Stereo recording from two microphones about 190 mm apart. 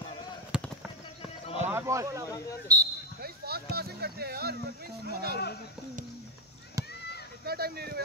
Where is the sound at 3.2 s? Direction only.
55° right (ahead or behind).